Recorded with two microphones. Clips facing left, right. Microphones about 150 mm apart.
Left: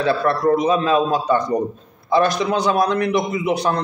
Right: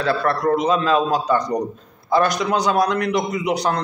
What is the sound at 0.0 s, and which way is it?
A man's voice, 20° left (ahead or behind).